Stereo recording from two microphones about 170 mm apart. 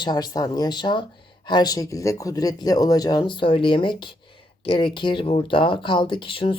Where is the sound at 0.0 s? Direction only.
25° left (ahead or behind).